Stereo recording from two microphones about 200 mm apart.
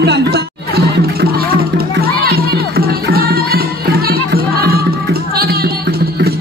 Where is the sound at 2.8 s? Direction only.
50° right (ahead or behind).